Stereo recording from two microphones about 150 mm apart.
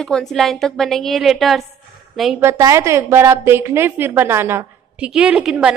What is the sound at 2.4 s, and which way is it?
A woman's voice, 20° right (ahead or behind).